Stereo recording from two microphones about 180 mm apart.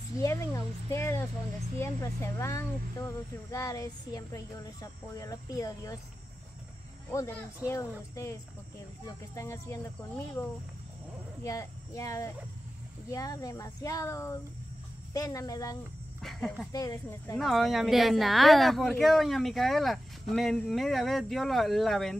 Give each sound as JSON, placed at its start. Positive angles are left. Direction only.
{"t": 0.2, "sound": "speech", "side_deg": 15}
{"t": 7.1, "sound": "speech", "side_deg": 15}
{"t": 11.4, "sound": "speech", "side_deg": 20}
{"t": 16.2, "sound": "speech", "side_deg": 0}
{"t": 16.7, "sound": "speech", "side_deg": 20}
{"t": 17.4, "sound": "a woman's voice", "side_deg": 0}